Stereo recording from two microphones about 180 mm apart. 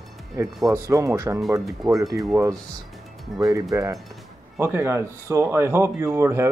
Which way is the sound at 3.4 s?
20° right (ahead or behind).